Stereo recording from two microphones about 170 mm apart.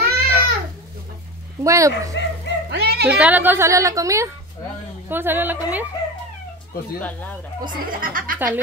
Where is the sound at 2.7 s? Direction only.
75° right (ahead or behind).